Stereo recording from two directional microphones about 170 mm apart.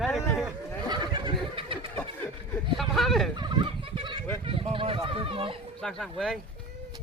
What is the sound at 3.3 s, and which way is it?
Fowl, 25° right (ahead or behind).